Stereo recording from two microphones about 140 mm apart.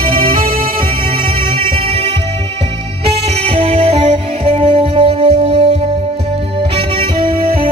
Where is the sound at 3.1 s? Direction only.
45° right (ahead or behind).